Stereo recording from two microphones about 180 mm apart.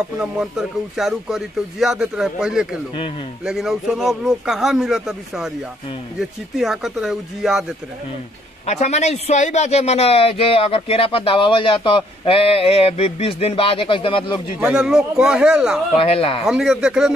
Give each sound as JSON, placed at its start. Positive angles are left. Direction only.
{"t": 0.2, "sound": "speech", "side_deg": 0}
{"t": 8.6, "sound": "a man's voice", "side_deg": 40}
{"t": 14.6, "sound": "speech", "side_deg": -5}
{"t": 16.0, "sound": "a man's voice", "side_deg": 30}
{"t": 16.4, "sound": "speech", "side_deg": 0}